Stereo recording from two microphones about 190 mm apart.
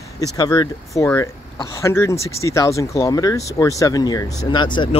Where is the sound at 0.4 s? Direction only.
20° left (ahead or behind).